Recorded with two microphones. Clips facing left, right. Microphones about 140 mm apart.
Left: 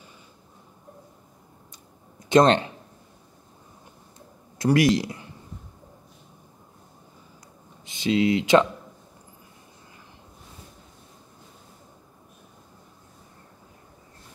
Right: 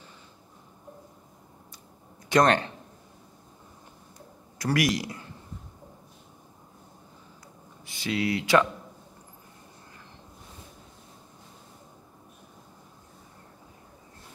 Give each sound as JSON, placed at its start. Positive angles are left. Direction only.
{"t": 2.2, "sound": "speech", "side_deg": 25}
{"t": 4.6, "sound": "speech", "side_deg": 25}
{"t": 7.8, "sound": "speech", "side_deg": 20}